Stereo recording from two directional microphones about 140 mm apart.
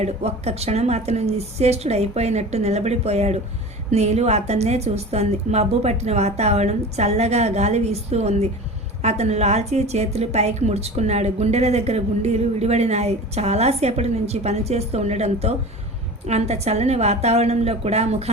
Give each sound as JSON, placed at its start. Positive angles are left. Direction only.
{"t": 0.0, "sound": "a woman's voice", "side_deg": -50}